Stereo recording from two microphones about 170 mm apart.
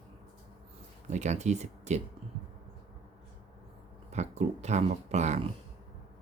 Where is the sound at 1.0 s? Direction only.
45° right (ahead or behind).